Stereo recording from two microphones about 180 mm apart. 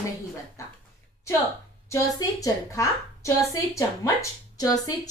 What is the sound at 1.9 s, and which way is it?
A woman's voice, 20° left (ahead or behind).